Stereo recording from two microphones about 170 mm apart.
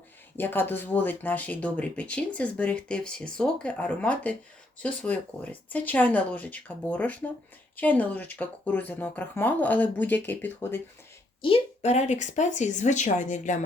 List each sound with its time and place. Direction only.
0.3 s speech: 10° left (ahead or behind)
11.4 s speech: 35° left (ahead or behind)